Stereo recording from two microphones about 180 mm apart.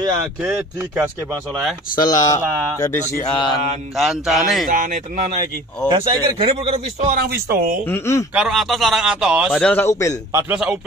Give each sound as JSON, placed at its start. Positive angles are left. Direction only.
{"t": 0.4, "sound": "speech", "side_deg": -15}
{"t": 2.0, "sound": "speech", "side_deg": 20}
{"t": 3.9, "sound": "a man's voice", "side_deg": 0}
{"t": 4.6, "sound": "speech", "side_deg": -45}
{"t": 5.9, "sound": "a man's voice", "side_deg": -25}
{"t": 7.1, "sound": "speech", "side_deg": -60}
{"t": 7.8, "sound": "a man's voice", "side_deg": 15}
{"t": 8.4, "sound": "a man's voice", "side_deg": 0}
{"t": 9.5, "sound": "a man's voice", "side_deg": 5}
{"t": 10.3, "sound": "speech", "side_deg": -5}